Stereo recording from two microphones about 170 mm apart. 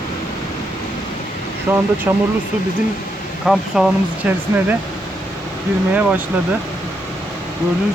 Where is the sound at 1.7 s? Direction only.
10° right (ahead or behind).